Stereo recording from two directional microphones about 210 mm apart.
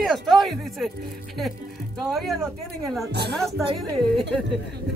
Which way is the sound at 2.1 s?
Centre (ahead or behind).